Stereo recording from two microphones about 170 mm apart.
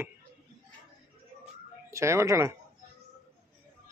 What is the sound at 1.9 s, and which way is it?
Speech, 15° right (ahead or behind).